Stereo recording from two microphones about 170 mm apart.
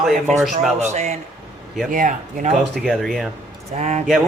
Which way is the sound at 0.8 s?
45° right (ahead or behind).